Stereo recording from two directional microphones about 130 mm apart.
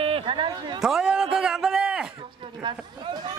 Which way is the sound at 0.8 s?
5° right (ahead or behind).